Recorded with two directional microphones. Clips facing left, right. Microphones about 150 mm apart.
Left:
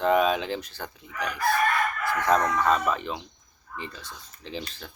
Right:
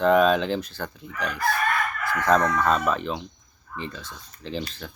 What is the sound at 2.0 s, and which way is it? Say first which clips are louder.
Crowing: right 3 dB; 15° left (ahead or behind).